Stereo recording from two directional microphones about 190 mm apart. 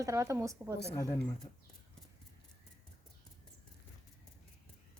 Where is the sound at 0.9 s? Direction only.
15° left (ahead or behind).